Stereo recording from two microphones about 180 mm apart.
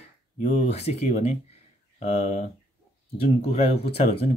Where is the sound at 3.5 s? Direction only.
35° left (ahead or behind).